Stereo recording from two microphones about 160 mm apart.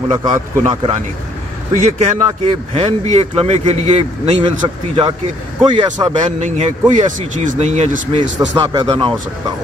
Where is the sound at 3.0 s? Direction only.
40° right (ahead or behind).